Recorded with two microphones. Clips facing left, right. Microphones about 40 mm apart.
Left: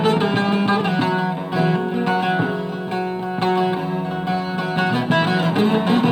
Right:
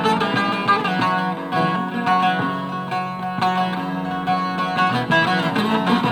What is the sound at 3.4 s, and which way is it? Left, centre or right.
Music, right.